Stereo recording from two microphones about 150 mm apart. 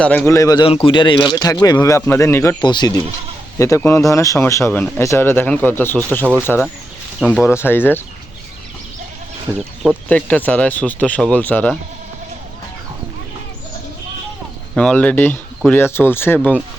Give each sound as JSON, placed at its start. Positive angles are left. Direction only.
{"t": 0.0, "sound": "speech", "side_deg": 5}
{"t": 0.3, "sound": "speech", "side_deg": 25}
{"t": 2.6, "sound": "speech", "side_deg": 30}
{"t": 3.8, "sound": "speech", "side_deg": 20}
{"t": 9.6, "sound": "speech", "side_deg": -5}
{"t": 10.1, "sound": "speech", "side_deg": 10}
{"t": 14.8, "sound": "speech", "side_deg": 5}